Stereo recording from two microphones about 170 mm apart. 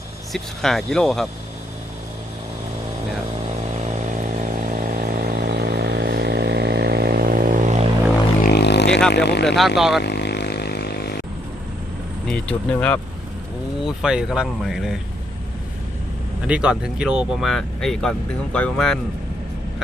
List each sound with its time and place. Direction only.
0.3 s speech: centre (ahead or behind)
3.8 s vehicle: 45° right (ahead or behind)
8.4 s didgeridoo: 80° left
9.1 s speech: 80° left
9.6 s speech: centre (ahead or behind)
10.0 s a sound: 80° left
12.3 s speech: 10° left (ahead or behind)
13.8 s speech: 5° right (ahead or behind)
16.5 s speech: 5° right (ahead or behind)